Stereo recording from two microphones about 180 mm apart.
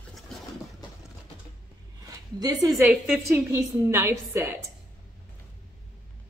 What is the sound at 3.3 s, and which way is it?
Speech, 15° right (ahead or behind).